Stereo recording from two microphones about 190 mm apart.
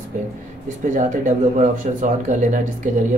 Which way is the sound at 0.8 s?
40° right (ahead or behind).